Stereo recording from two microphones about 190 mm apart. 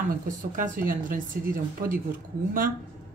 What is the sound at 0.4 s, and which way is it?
Speech, 45° right (ahead or behind).